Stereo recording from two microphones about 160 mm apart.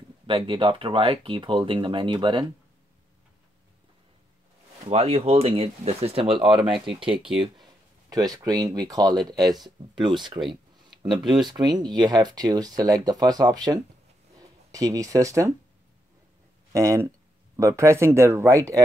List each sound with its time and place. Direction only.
0.3 s speech: 35° right (ahead or behind)
4.8 s speech: 40° right (ahead or behind)
8.1 s speech: 25° right (ahead or behind)
11.5 s speech: 25° right (ahead or behind)
16.7 s speech: 20° right (ahead or behind)